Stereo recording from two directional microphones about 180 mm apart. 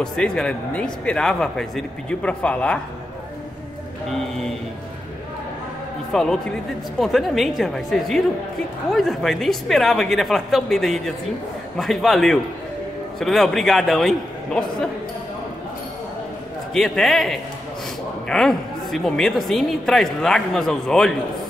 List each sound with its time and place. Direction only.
0.0 s speech: 5° left (ahead or behind)
6.1 s speech: 5° left (ahead or behind)
16.7 s speech: centre (ahead or behind)